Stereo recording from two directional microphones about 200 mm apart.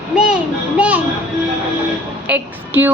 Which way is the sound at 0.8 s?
5° right (ahead or behind).